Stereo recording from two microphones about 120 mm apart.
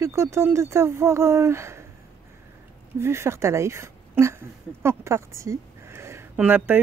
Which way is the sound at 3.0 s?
20° right (ahead or behind).